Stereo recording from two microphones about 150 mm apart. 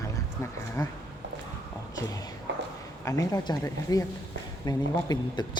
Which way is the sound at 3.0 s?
20° left (ahead or behind).